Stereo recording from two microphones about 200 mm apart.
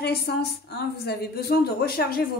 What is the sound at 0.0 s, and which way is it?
A woman's voice, 55° left (ahead or behind).